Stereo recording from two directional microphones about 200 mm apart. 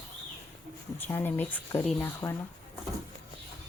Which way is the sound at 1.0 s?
10° left (ahead or behind).